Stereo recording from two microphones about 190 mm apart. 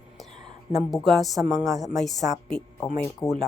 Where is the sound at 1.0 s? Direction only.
Centre (ahead or behind).